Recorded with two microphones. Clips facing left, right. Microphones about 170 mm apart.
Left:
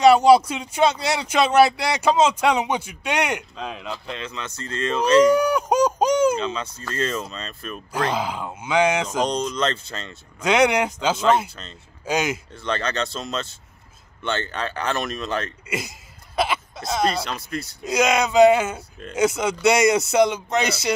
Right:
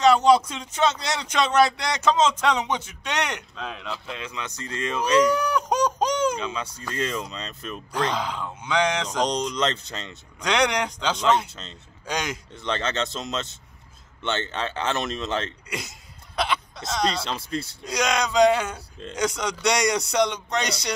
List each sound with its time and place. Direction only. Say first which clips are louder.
0.0 s speech: left 4 dB; 10° left (ahead or behind); by 5.2 s 10° right (ahead or behind)
5.3 s speech: left 5 dB; 10° left (ahead or behind)
6.3 s speech: left 4 dB; 10° right (ahead or behind)
7.7 s speech: left 2 dB; 5° left (ahead or behind)
9.2 s speech: right 1 dB; 15° right (ahead or behind)
10.4 s speech: left 5 dB; 5° left (ahead or behind)
11.6 s speech: left 1 dB; 20° right (ahead or behind)
12.1 s speech: left 6 dB; 5° left (ahead or behind)
12.6 s speech: left 2 dB; 20° right (ahead or behind)
16.3 s throat clearing: left 3 dB; 5° left (ahead or behind)
17.2 s speech: even; 25° right (ahead or behind)
17.8 s speech: left 6 dB; 5° left (ahead or behind)